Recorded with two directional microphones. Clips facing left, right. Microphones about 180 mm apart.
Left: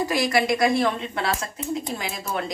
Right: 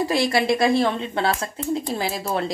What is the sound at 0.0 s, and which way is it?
A woman's voice, 30° right (ahead or behind).